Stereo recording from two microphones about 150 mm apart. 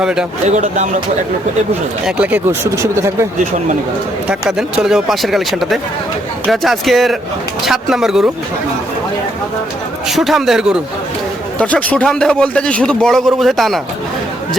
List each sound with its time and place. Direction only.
0.0 s a man's voice: 5° right (ahead or behind)
0.4 s speech: 50° right (ahead or behind)
2.0 s speech: 10° right (ahead or behind)
4.3 s a man's voice: 5° right (ahead or behind)
10.1 s a man's voice: centre (ahead or behind)
11.6 s a man's voice: 10° left (ahead or behind)